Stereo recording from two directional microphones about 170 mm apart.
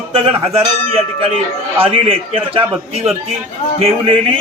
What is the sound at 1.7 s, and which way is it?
Speech, 35° right (ahead or behind).